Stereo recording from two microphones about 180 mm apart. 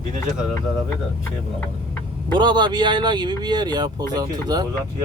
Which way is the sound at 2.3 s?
25° right (ahead or behind).